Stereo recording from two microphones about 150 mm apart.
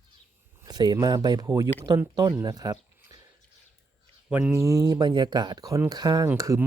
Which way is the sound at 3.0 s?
25° right (ahead or behind).